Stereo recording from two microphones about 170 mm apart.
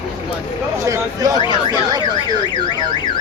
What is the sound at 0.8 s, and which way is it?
Speech, 20° right (ahead or behind).